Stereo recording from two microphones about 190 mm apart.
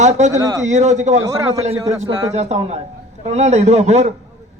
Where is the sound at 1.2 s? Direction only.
15° right (ahead or behind).